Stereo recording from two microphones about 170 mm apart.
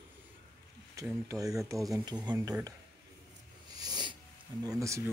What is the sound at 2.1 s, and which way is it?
Speech, 5° right (ahead or behind).